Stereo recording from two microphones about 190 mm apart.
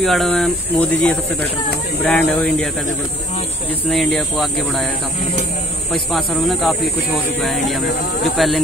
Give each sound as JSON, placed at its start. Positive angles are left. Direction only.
{"t": 0.0, "sound": "speech", "side_deg": 0}
{"t": 3.9, "sound": "speech", "side_deg": 5}
{"t": 6.1, "sound": "speech", "side_deg": 0}